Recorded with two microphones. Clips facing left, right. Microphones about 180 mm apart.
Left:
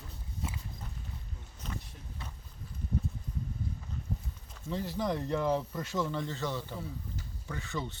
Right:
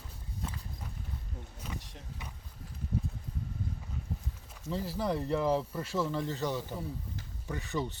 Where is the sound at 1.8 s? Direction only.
85° right.